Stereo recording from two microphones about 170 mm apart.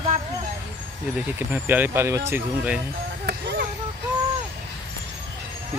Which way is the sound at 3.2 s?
65° right (ahead or behind).